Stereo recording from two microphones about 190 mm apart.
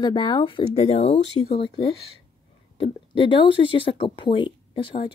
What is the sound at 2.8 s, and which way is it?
Speech, 25° left (ahead or behind).